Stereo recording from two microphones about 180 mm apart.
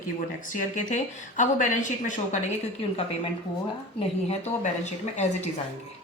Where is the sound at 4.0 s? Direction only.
35° left (ahead or behind).